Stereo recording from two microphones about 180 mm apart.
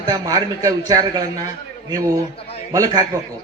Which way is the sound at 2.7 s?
20° right (ahead or behind).